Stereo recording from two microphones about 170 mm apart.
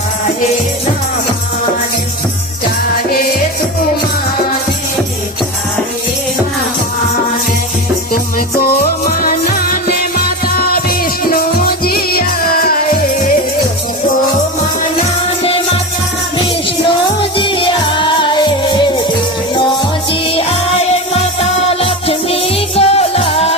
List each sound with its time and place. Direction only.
8.1 s music: 60° left (ahead or behind)
17.2 s music: 30° left (ahead or behind)
20.3 s music: 35° left (ahead or behind)